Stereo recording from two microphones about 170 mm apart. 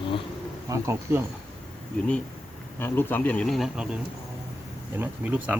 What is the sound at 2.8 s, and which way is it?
Speech, 10° left (ahead or behind).